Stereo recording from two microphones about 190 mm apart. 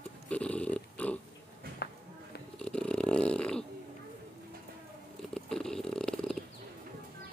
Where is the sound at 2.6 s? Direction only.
5° left (ahead or behind).